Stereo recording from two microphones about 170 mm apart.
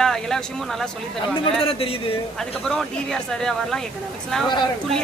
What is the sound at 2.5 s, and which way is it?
Speech, 5° left (ahead or behind).